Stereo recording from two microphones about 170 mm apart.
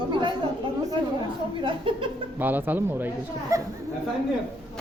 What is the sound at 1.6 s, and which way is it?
Speech, 30° right (ahead or behind).